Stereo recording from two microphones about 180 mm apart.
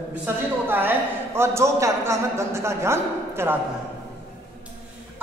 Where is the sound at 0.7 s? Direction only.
10° right (ahead or behind).